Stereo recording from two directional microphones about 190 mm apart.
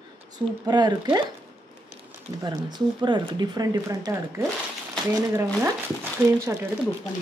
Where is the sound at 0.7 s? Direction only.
20° right (ahead or behind).